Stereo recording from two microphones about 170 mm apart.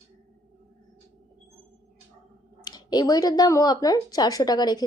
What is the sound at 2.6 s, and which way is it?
Speech, 25° left (ahead or behind).